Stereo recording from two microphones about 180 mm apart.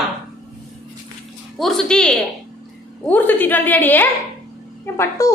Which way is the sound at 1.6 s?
Centre (ahead or behind).